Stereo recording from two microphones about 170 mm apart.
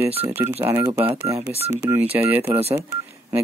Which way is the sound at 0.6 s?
15° right (ahead or behind).